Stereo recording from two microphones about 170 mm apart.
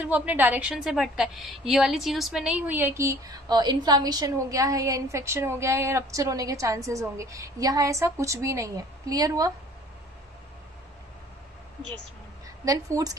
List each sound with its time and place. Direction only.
0.0 s a woman's voice: 10° right (ahead or behind)
12.6 s a woman's voice: 20° right (ahead or behind)